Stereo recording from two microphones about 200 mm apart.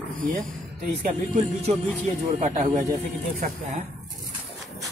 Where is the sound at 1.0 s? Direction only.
40° right (ahead or behind).